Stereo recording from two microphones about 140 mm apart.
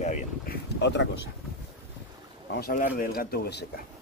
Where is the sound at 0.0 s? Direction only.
55° left (ahead or behind).